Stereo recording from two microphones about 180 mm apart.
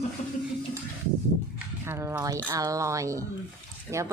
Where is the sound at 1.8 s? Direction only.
15° right (ahead or behind).